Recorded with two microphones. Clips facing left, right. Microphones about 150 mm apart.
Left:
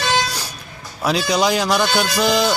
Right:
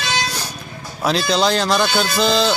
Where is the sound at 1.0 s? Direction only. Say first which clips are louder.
Even; 10° left (ahead or behind).